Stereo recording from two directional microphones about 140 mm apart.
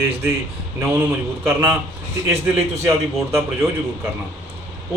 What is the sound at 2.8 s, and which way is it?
Speech, 20° right (ahead or behind).